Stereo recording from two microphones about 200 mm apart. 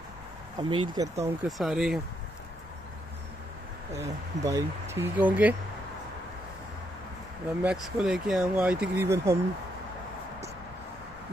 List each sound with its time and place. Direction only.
0.6 s speech: 25° right (ahead or behind)
1.6 s speech: centre (ahead or behind)
4.0 s speech: 15° right (ahead or behind)
7.6 s speech: 5° right (ahead or behind)